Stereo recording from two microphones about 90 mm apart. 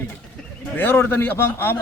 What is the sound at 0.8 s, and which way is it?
Speech, 25° left (ahead or behind).